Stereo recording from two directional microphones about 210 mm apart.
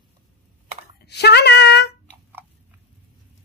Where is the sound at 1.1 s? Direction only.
50° left (ahead or behind).